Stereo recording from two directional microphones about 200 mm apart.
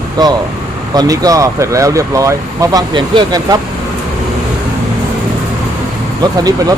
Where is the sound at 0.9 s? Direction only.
20° right (ahead or behind).